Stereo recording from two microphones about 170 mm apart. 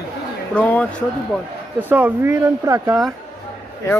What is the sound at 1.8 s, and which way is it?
Speech, 10° right (ahead or behind).